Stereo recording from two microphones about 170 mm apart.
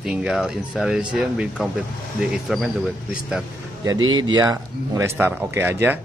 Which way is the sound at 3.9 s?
25° right (ahead or behind).